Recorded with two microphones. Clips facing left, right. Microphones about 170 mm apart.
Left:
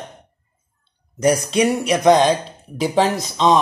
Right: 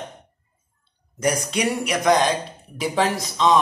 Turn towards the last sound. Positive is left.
turn(degrees=30)  # may be behind; listen again after turning